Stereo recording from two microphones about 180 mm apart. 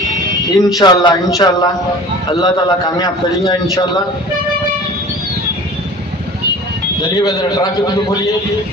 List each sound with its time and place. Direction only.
0.6 s a man's voice: 25° left (ahead or behind)
7.0 s a man's voice: 20° left (ahead or behind)